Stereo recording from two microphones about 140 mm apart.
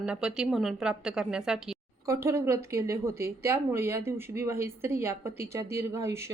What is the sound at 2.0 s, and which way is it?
A woman's voice, 20° right (ahead or behind).